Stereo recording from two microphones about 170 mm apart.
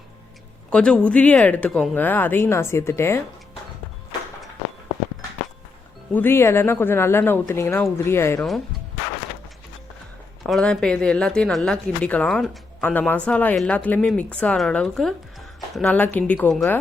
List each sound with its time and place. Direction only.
0.7 s speech: 5° left (ahead or behind)
6.1 s speech: 10° left (ahead or behind)
8.4 s speech: centre (ahead or behind)
10.4 s speech: 5° left (ahead or behind)